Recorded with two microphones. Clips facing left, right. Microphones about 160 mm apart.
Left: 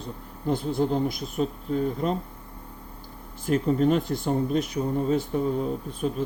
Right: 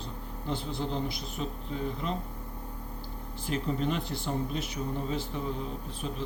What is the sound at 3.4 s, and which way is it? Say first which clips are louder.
Speech: left 9 dB; 50° left (ahead or behind).